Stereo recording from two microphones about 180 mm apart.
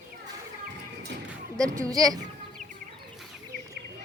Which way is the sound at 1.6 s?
20° right (ahead or behind).